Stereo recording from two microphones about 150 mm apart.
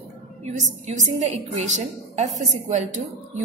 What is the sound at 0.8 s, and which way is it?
A woman's voice, 50° right (ahead or behind).